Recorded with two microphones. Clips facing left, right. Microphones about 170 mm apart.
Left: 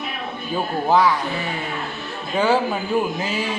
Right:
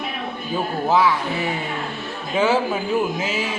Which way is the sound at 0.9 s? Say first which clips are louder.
Left 1 dB; 5° right (ahead or behind).